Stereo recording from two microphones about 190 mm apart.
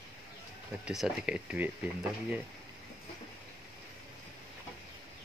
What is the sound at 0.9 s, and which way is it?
Speech, 5° right (ahead or behind).